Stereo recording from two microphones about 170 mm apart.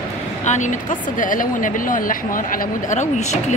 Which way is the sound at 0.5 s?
45° left (ahead or behind).